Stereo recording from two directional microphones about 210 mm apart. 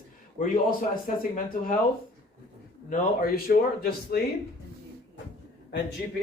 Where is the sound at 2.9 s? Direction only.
45° left (ahead or behind).